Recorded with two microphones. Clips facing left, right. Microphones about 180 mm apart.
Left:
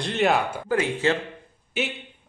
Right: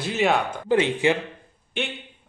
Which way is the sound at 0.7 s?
20° right (ahead or behind).